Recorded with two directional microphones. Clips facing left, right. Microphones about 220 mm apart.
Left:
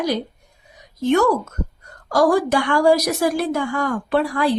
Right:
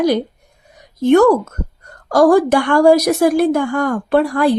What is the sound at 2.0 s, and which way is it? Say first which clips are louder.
A woman's voice: right 6 dB; 55° right (ahead or behind).